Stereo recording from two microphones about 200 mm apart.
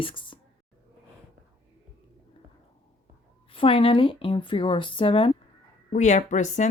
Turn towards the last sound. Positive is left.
turn(degrees=35)  # may be behind; listen again after turning